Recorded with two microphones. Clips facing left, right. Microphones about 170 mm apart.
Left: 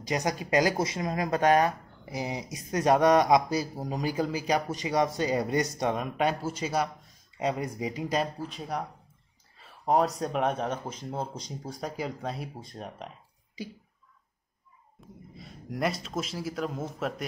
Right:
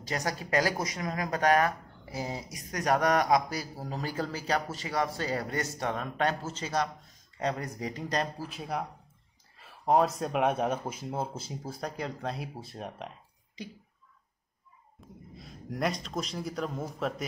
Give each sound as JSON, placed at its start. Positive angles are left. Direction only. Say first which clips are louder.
{"t": 0.0, "sound": "speech", "louder": "left 4 dB", "side_deg": 15}
{"t": 8.4, "sound": "speech", "louder": "left 1 dB", "side_deg": -5}
{"t": 15.0, "sound": "speech", "louder": "left 1 dB", "side_deg": 0}